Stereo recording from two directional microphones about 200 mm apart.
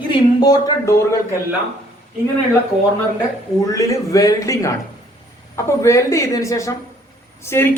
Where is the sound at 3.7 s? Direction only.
15° left (ahead or behind).